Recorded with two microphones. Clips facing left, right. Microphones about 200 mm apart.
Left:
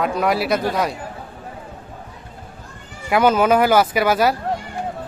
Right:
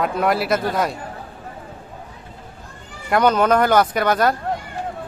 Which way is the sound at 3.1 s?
5° left (ahead or behind).